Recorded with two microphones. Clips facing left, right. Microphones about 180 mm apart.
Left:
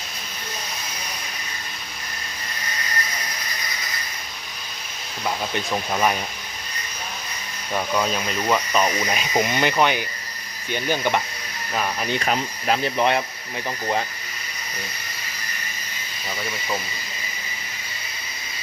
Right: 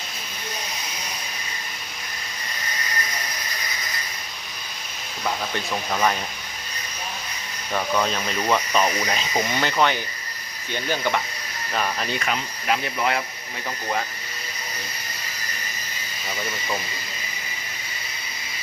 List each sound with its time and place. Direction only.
5.7 s speech: 10° left (ahead or behind)
7.7 s speech: 5° left (ahead or behind)
11.7 s speech: 5° left (ahead or behind)
12.3 s speech: 35° left (ahead or behind)
13.0 s speech: 25° left (ahead or behind)